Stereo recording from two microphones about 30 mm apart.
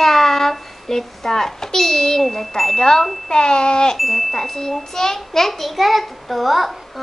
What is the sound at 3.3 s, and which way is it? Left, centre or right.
Speech, left.